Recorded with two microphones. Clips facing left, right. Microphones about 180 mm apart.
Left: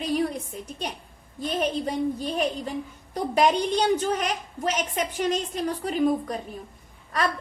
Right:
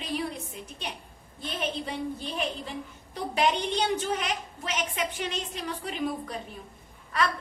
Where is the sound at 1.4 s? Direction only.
40° left (ahead or behind).